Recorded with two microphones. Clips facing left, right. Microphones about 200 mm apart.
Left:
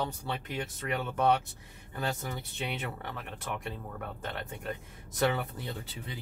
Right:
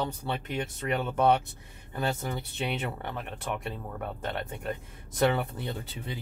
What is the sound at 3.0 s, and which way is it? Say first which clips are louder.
Speech: right 4 dB; 25° right (ahead or behind).